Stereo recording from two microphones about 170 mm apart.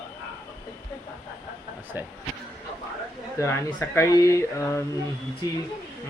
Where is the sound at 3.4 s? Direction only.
15° left (ahead or behind).